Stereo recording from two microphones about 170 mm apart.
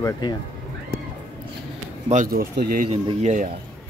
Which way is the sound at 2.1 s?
55° right (ahead or behind).